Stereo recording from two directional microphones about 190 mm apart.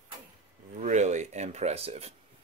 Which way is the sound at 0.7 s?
40° right (ahead or behind).